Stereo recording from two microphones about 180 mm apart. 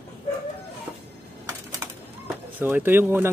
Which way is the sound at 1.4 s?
20° right (ahead or behind).